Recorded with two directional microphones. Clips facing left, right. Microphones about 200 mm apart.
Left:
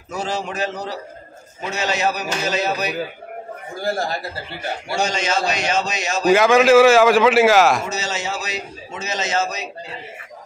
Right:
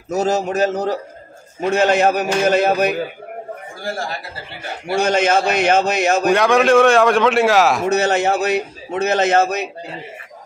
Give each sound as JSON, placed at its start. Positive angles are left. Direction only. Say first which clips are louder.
{"t": 0.1, "sound": "a man's voice", "louder": "right 8 dB", "side_deg": -40}
{"t": 3.8, "sound": "speech", "louder": "left 3 dB", "side_deg": 40}
{"t": 4.8, "sound": "a man's voice", "louder": "right 7 dB", "side_deg": -55}
{"t": 6.3, "sound": "a man's voice", "louder": "left 3 dB", "side_deg": 0}
{"t": 7.8, "sound": "a man's voice", "louder": "right 10 dB", "side_deg": -60}